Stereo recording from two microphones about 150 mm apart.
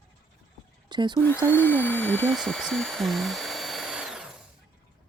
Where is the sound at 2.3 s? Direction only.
Centre (ahead or behind).